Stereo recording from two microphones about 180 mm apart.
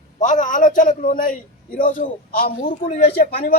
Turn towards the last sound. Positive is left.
turn(degrees=60)  # may be behind; listen again after turning